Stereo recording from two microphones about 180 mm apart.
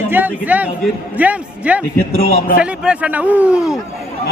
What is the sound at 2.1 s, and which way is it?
Speech, 60° left (ahead or behind).